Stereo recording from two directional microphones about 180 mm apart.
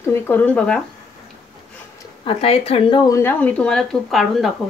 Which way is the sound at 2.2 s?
35° left (ahead or behind).